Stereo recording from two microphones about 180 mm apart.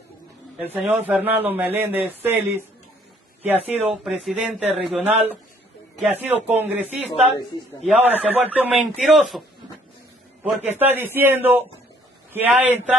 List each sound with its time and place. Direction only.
0.6 s a man's voice: 10° right (ahead or behind)
4.9 s a man's voice: 40° right (ahead or behind)
6.1 s a man's voice: 10° right (ahead or behind)
8.0 s a man's voice: 10° right (ahead or behind)
10.4 s a man's voice: 10° right (ahead or behind)